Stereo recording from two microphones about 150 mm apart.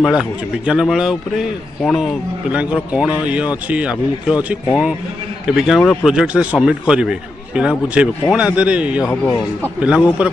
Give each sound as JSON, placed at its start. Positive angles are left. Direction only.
{"t": 0.0, "sound": "a man's voice", "side_deg": -5}
{"t": 5.6, "sound": "a man's voice", "side_deg": 0}
{"t": 9.0, "sound": "speech", "side_deg": 15}
{"t": 9.6, "sound": "a man's voice", "side_deg": -10}